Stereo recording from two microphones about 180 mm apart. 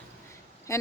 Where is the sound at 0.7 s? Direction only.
15° left (ahead or behind).